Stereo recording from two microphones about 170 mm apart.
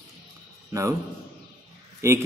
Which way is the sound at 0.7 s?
15° right (ahead or behind).